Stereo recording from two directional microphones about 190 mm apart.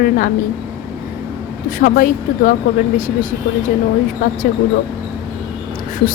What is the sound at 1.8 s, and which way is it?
Speech, 45° left (ahead or behind).